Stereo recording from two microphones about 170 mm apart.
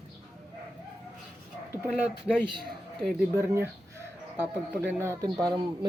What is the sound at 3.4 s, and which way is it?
Bird, 15° right (ahead or behind).